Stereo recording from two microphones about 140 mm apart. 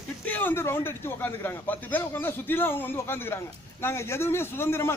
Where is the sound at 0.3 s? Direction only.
15° left (ahead or behind).